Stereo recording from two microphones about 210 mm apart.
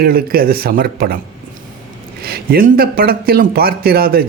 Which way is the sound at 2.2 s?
45° right (ahead or behind).